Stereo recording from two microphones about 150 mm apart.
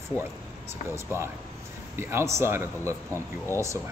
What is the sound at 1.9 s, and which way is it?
Speech, 15° right (ahead or behind).